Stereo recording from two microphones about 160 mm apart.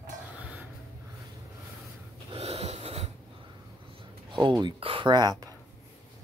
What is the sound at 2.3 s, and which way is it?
Snort, 40° right (ahead or behind).